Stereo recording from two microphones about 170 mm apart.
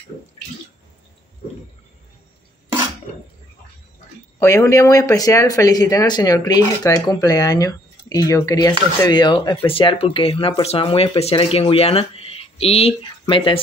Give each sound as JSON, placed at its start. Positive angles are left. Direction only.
{"t": 4.4, "sound": "speech", "side_deg": 15}